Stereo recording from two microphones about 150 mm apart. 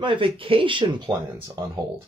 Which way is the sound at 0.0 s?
35° right (ahead or behind).